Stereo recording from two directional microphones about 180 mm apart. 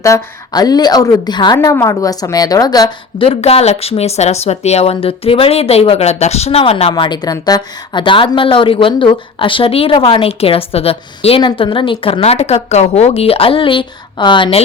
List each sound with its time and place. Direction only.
0.0 s a woman's voice: 20° left (ahead or behind)
3.2 s speech: 35° left (ahead or behind)